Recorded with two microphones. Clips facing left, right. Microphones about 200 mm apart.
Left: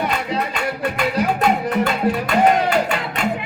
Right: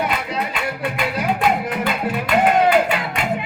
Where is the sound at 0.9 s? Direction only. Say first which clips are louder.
Left 3 dB; 45° left (ahead or behind).